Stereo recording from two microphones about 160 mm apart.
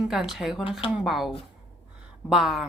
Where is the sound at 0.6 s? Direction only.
35° left (ahead or behind).